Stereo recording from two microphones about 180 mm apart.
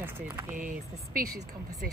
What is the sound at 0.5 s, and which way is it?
Speech, 50° right (ahead or behind).